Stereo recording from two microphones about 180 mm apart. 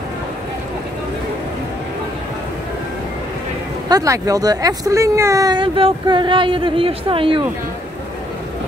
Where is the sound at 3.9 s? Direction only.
20° right (ahead or behind).